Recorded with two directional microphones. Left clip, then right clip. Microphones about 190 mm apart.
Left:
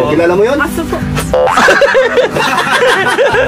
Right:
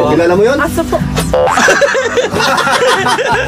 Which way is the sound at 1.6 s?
10° right (ahead or behind).